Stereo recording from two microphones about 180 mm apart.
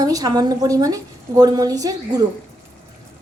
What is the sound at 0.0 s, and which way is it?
A woman's voice, 20° right (ahead or behind).